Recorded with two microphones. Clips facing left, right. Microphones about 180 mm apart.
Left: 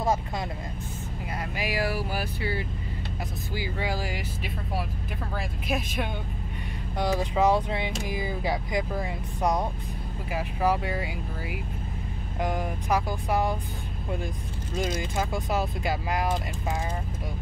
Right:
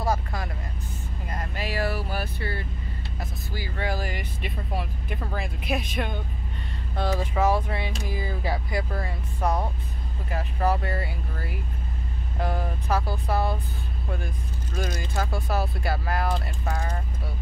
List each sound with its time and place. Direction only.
0.0 s vehicle: 20° left (ahead or behind)
1.3 s vehicle: 10° left (ahead or behind)
3.5 s speech: 15° left (ahead or behind)
7.0 s speech: 15° left (ahead or behind)
14.8 s speech: 20° left (ahead or behind)